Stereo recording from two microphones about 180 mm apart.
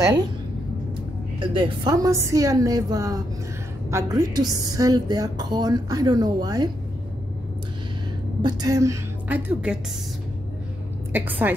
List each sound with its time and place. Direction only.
0.0 s a woman's voice: 20° right (ahead or behind)
1.5 s a woman's voice: 20° right (ahead or behind)
8.4 s a woman's voice: 25° right (ahead or behind)
11.1 s a woman's voice: 10° right (ahead or behind)